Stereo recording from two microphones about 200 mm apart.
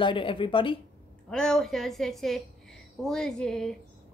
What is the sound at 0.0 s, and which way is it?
Speech, 25° left (ahead or behind).